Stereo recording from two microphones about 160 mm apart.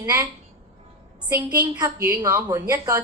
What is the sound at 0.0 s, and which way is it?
Speech, 15° right (ahead or behind).